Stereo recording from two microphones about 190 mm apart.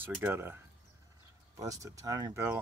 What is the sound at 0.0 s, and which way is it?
Speech, 10° right (ahead or behind).